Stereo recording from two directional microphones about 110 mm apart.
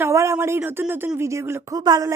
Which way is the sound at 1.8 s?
35° right (ahead or behind).